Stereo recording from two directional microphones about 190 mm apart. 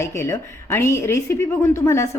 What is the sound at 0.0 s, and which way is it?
A woman's voice, 15° left (ahead or behind).